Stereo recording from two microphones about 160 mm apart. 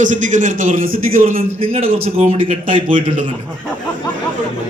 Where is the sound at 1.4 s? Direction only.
40° right (ahead or behind).